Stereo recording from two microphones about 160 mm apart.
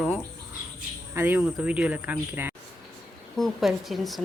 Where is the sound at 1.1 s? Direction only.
15° right (ahead or behind).